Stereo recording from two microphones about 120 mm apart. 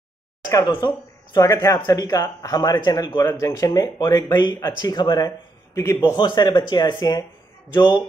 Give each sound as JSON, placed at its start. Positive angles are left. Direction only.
{"t": 0.7, "sound": "speech", "side_deg": 40}
{"t": 5.8, "sound": "a man's voice", "side_deg": 20}
{"t": 6.1, "sound": "speech", "side_deg": 40}